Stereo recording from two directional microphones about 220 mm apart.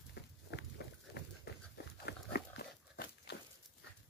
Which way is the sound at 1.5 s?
45° left (ahead or behind).